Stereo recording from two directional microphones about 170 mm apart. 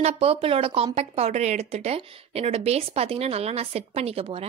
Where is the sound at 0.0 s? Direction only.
35° right (ahead or behind).